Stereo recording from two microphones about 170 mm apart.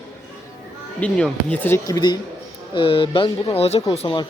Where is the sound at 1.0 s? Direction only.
5° left (ahead or behind); by 4.2 s 30° left (ahead or behind).